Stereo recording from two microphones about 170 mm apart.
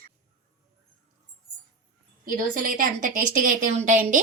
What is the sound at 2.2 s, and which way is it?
Speech, 55° right (ahead or behind).